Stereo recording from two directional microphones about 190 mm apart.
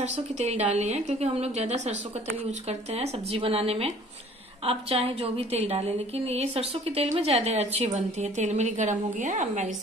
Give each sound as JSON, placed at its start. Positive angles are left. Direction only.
{"t": 0.0, "sound": "a woman's voice", "side_deg": -35}